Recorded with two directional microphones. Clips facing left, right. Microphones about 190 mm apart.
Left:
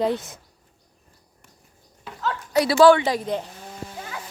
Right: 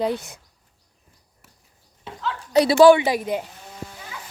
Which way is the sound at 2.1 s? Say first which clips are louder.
Right 2 dB; 25° right (ahead or behind).